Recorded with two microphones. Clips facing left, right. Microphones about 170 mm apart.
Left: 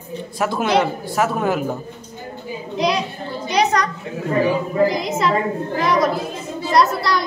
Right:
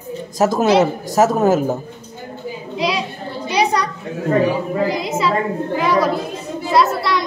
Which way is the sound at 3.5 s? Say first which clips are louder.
Even; 10° right (ahead or behind).